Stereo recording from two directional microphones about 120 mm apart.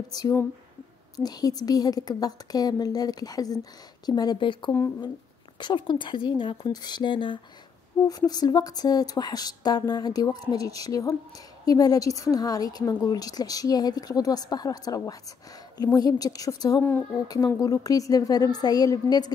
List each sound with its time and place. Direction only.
0.1 s a woman's voice: 30° left (ahead or behind)
8.0 s a woman's voice: 25° left (ahead or behind)